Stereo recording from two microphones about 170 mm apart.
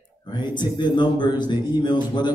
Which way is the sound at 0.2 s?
25° left (ahead or behind).